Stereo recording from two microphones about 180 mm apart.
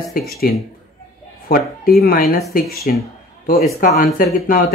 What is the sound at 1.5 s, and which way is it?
Speech, 55° left (ahead or behind).